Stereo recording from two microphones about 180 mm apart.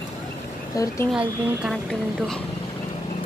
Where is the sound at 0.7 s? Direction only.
20° left (ahead or behind).